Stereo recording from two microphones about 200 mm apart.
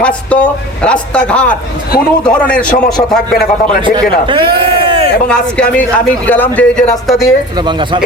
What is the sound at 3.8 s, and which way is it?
Speech, 25° right (ahead or behind).